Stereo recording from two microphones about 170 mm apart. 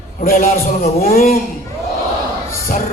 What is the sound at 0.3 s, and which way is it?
A man's voice, 55° left (ahead or behind).